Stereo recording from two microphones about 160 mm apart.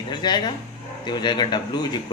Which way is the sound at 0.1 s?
25° left (ahead or behind).